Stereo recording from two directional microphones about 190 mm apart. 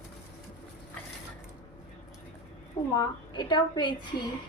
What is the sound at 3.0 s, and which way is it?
Speech, 25° left (ahead or behind).